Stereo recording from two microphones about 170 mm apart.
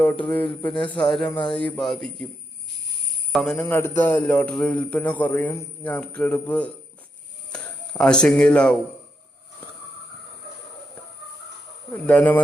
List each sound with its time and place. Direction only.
0.0 s a man's voice: 10° left (ahead or behind)
3.3 s a man's voice: centre (ahead or behind)
3.6 s a man's voice: 15° left (ahead or behind)
11.9 s a man's voice: 10° left (ahead or behind)